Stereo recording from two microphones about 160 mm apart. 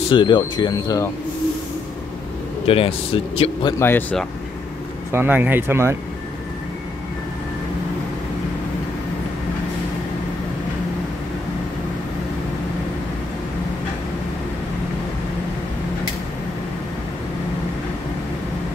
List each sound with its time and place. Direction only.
0.1 s speech: 30° left (ahead or behind)
2.6 s speech: 35° left (ahead or behind)
3.8 s speech: 10° left (ahead or behind)
5.1 s speech: 10° right (ahead or behind)